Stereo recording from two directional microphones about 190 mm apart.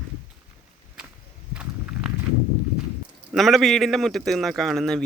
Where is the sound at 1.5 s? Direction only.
5° right (ahead or behind).